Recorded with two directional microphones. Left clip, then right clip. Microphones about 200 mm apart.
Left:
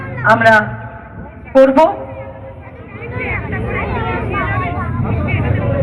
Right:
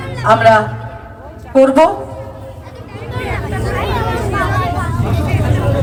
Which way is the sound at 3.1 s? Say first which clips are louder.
Even; 65° right (ahead or behind).